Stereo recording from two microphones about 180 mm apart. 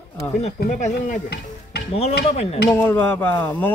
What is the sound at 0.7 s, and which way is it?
Speech, 45° left (ahead or behind).